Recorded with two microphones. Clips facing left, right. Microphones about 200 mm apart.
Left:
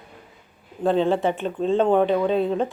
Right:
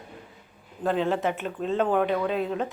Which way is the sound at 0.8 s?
30° left (ahead or behind).